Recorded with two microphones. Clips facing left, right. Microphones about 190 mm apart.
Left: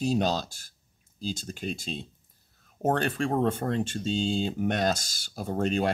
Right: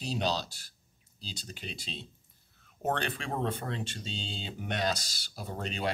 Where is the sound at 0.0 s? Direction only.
45° left (ahead or behind).